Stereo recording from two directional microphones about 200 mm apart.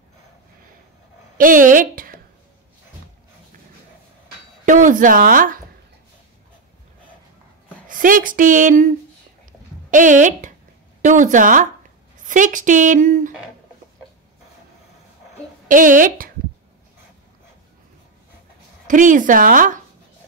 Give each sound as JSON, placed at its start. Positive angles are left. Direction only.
{"t": 1.4, "sound": "speech", "side_deg": -40}
{"t": 4.6, "sound": "speech", "side_deg": -40}
{"t": 7.9, "sound": "a woman's voice", "side_deg": -40}
{"t": 9.5, "sound": "a sound", "side_deg": -40}
{"t": 11.0, "sound": "a woman's voice", "side_deg": -40}
{"t": 15.7, "sound": "speech", "side_deg": -40}
{"t": 18.9, "sound": "a woman's voice", "side_deg": -40}